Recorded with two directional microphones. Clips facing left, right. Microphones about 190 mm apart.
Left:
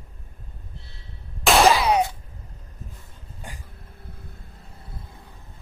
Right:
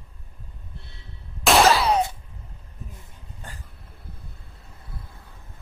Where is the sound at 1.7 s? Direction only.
15° left (ahead or behind).